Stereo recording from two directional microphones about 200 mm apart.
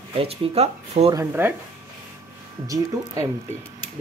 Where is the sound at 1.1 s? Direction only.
10° right (ahead or behind).